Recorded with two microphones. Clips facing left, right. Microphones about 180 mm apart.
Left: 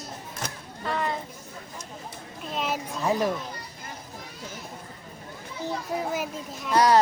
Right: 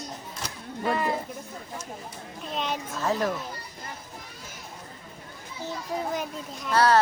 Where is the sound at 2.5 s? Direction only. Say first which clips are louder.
Left 1 dB; 5° left (ahead or behind).